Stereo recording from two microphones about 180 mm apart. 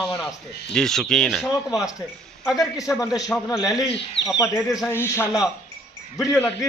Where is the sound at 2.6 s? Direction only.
20° left (ahead or behind).